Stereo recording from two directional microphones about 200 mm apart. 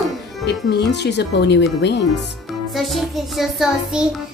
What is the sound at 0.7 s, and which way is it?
Speech, 55° left (ahead or behind).